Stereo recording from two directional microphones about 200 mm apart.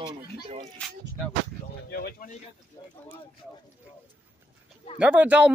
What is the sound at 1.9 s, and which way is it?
Speech, 50° left (ahead or behind).